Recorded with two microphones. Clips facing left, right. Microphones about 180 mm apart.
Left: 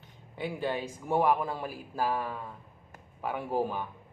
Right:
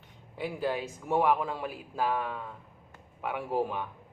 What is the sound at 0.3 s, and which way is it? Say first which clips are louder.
A man's voice: right 1 dB; centre (ahead or behind).